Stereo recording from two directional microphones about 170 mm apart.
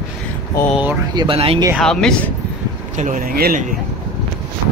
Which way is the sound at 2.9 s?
45° right (ahead or behind).